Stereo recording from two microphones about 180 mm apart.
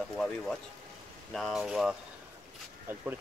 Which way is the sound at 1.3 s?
Centre (ahead or behind).